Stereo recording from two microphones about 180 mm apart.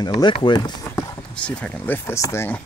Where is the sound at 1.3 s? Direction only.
5° left (ahead or behind).